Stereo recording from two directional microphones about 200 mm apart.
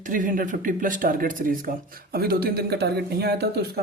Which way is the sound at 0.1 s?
40° right (ahead or behind).